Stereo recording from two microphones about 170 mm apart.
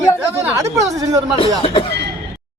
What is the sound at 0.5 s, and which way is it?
Speech, 20° right (ahead or behind).